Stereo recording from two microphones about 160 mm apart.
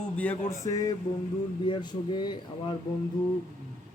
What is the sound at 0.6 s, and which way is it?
Speech, 20° left (ahead or behind).